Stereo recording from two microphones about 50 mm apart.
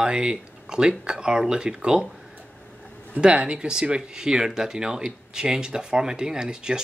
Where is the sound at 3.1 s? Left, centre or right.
Right.